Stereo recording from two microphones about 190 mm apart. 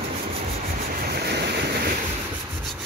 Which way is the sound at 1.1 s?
60° right (ahead or behind).